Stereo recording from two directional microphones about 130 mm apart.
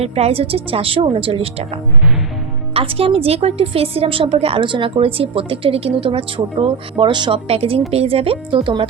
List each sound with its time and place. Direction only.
0.0 s a woman's voice: 50° right (ahead or behind)